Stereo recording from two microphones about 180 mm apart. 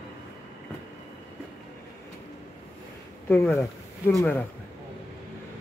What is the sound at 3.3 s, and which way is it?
Speech, 10° left (ahead or behind).